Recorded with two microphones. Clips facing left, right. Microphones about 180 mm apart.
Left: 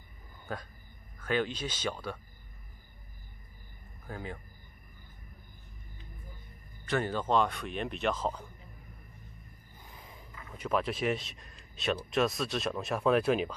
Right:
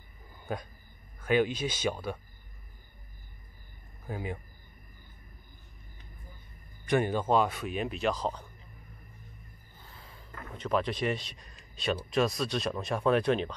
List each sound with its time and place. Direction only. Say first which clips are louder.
1.2 s speech: right 5 dB; 10° right (ahead or behind)
4.1 s speech: right 4 dB; 15° right (ahead or behind)
6.9 s speech: right 3 dB; 15° right (ahead or behind); by 8.5 s 5° left (ahead or behind)
9.8 s a sound: left 1 dB; 15° left (ahead or behind)
10.6 s speech: right 1 dB; 5° left (ahead or behind)